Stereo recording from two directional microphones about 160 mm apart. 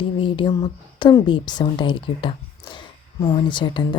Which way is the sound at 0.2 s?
30° left (ahead or behind).